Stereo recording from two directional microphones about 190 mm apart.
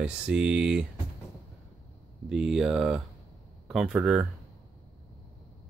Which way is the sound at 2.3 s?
5° right (ahead or behind).